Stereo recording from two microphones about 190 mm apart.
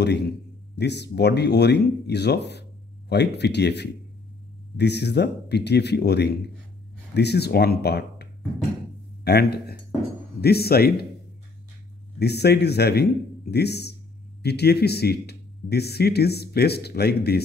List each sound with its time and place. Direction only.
0.0 s speech: 60° left (ahead or behind)
12.2 s speech: 60° left (ahead or behind)